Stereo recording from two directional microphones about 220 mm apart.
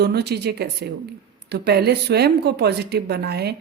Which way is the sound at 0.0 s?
45° right (ahead or behind).